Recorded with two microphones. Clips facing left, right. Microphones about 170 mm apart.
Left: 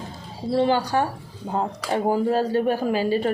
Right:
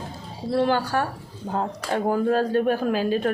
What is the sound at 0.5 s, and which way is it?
Speech, 20° left (ahead or behind).